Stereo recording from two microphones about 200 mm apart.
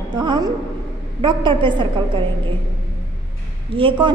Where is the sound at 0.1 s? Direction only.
20° right (ahead or behind).